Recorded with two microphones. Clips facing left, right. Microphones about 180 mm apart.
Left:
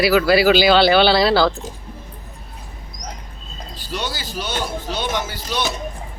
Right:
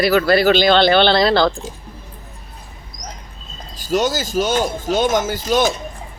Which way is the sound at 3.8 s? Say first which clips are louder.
Right 10 dB; 45° right (ahead or behind).